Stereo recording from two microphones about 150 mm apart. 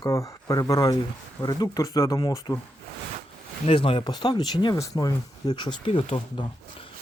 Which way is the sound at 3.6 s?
40° left (ahead or behind).